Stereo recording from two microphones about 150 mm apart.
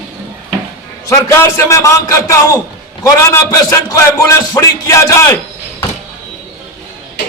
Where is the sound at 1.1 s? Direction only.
15° left (ahead or behind).